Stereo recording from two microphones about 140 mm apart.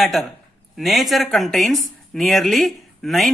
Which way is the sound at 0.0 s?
Centre (ahead or behind).